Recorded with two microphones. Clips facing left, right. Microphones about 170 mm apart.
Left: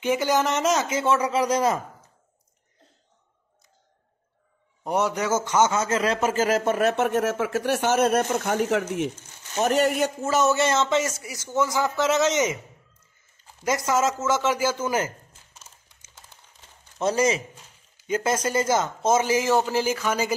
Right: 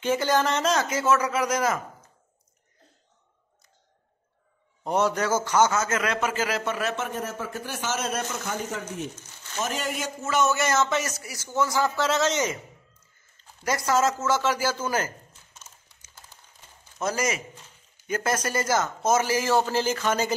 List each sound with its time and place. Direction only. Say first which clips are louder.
0.0 s speech: left 1 dB; 15° left (ahead or behind); by 1.8 s 30° left (ahead or behind)
4.8 s a man's voice: even; 15° left (ahead or behind); by 9.1 s 75° left (ahead or behind)
9.6 s speech: left 9 dB; 60° left (ahead or behind)
10.2 s speech: left 1 dB; 35° left (ahead or behind)
13.7 s speech: left 1 dB; 20° left (ahead or behind)
17.0 s speech: left 5 dB; 30° left (ahead or behind); by 20.3 s 10° left (ahead or behind)